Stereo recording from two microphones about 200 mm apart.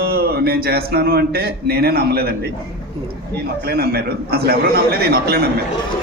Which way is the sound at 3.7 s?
50° right (ahead or behind).